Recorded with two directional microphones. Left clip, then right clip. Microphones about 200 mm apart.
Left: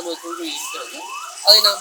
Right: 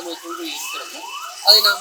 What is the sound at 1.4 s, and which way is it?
Speech, 20° left (ahead or behind).